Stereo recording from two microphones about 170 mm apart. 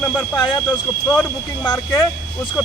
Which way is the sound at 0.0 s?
15° left (ahead or behind).